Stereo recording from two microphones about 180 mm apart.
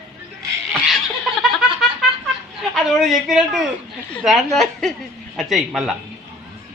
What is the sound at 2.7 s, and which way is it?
A man's voice, centre (ahead or behind).